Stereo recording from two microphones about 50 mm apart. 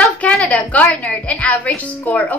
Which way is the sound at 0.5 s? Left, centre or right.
Left.